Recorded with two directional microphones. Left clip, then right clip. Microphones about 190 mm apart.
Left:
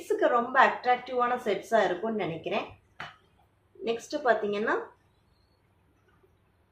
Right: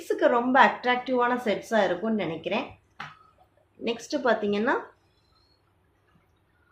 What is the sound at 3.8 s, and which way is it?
Speech, 45° right (ahead or behind).